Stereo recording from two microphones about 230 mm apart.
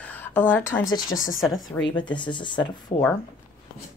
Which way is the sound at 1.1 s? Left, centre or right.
Left.